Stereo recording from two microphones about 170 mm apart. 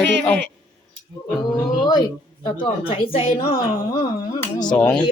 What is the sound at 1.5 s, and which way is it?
A woman's voice, 25° left (ahead or behind).